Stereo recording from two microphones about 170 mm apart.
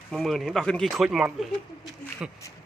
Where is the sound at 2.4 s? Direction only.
15° left (ahead or behind).